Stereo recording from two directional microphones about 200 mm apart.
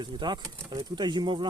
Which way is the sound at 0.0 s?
20° right (ahead or behind).